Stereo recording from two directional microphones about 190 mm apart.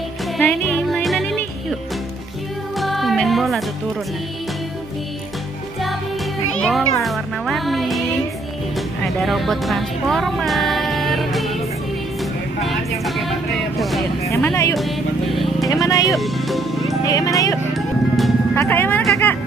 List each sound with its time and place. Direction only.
0.4 s music: centre (ahead or behind)
2.8 s music: centre (ahead or behind)
6.6 s music: centre (ahead or behind)
8.7 s speech: centre (ahead or behind)
12.6 s vehicle: centre (ahead or behind)
14.2 s speech: 15° left (ahead or behind)
14.8 s music: centre (ahead or behind)
15.7 s speech: 20° left (ahead or behind)
16.2 s music: centre (ahead or behind)
17.1 s speech: 15° left (ahead or behind)
17.7 s music: centre (ahead or behind)
18.5 s music: 10° left (ahead or behind)